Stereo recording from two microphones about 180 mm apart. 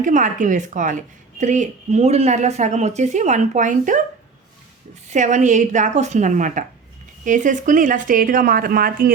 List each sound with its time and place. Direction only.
0.0 s a woman's voice: 45° right (ahead or behind)
5.0 s a woman's voice: 40° right (ahead or behind)